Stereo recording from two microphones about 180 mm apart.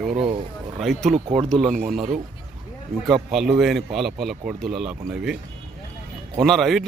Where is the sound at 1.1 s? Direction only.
30° right (ahead or behind).